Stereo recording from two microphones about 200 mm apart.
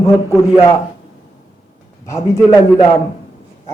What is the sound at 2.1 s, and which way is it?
Speech, 15° left (ahead or behind).